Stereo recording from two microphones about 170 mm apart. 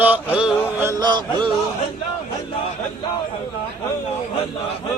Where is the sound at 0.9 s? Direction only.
25° right (ahead or behind).